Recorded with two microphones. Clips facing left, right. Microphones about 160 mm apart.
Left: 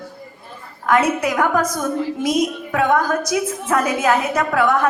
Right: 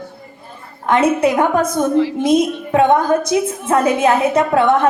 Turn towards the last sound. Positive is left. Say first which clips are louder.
# right 4 dB
turn(degrees=-25)  # may be behind; listen again after turning